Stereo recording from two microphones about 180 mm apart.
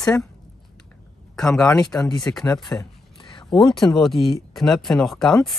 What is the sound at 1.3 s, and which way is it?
Speech, 5° left (ahead or behind).